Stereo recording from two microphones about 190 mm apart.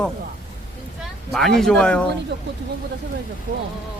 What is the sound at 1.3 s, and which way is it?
Speech, centre (ahead or behind).